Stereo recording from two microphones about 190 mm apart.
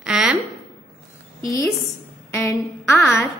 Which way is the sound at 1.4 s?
15° left (ahead or behind).